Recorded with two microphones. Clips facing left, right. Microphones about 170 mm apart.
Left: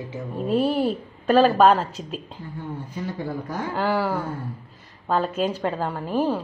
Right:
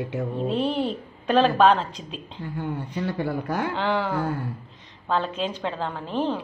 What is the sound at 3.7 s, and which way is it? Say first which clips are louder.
A woman's voice: left 6 dB; 5° left (ahead or behind).